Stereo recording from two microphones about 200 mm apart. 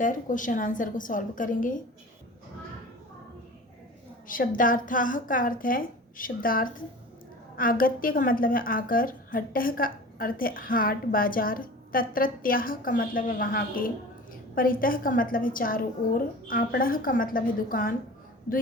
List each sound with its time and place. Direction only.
0.0 s a woman's voice: 40° left (ahead or behind)
4.3 s a woman's voice: 45° left (ahead or behind)